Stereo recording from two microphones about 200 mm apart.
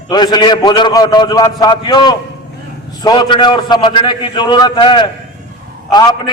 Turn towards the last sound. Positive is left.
turn(degrees=20)  # may be behind; listen again after turning